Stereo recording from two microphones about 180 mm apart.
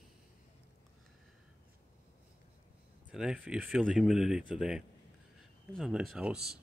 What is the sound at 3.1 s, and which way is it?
Speech, 5° right (ahead or behind).